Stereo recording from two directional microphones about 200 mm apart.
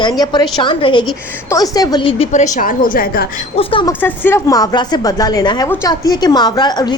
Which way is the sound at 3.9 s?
10° left (ahead or behind).